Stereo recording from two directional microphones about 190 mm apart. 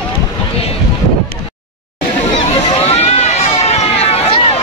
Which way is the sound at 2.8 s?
35° left (ahead or behind).